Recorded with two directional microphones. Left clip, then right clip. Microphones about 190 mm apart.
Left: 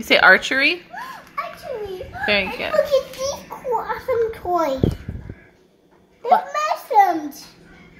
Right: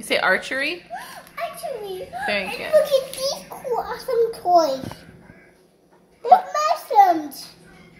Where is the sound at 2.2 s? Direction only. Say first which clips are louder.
Left 5 dB; 20° left (ahead or behind).